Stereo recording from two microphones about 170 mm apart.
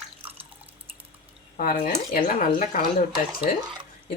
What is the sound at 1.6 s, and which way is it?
Speech, 50° left (ahead or behind).